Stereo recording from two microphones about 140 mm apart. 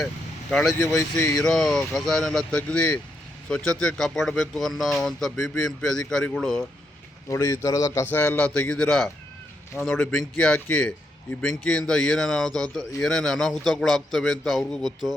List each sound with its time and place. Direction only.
0.5 s a man's voice: centre (ahead or behind)
7.3 s a man's voice: 25° left (ahead or behind)
8.0 s a man's voice: 15° left (ahead or behind)